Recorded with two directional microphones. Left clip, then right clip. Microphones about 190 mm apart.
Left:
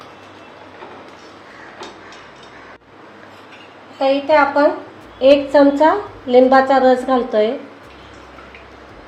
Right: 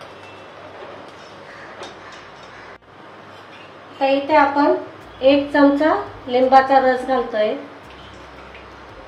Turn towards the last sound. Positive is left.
turn(degrees=50)  # may be behind; listen again after turning